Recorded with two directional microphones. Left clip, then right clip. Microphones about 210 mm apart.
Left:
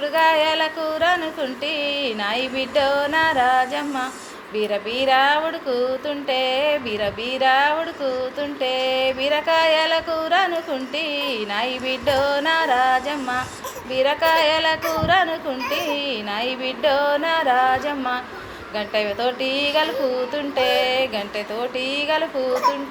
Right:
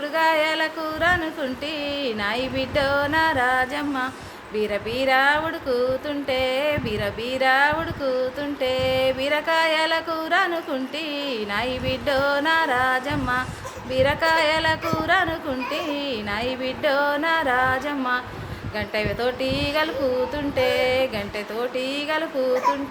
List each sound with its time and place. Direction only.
0.0 s speech: 15° right (ahead or behind)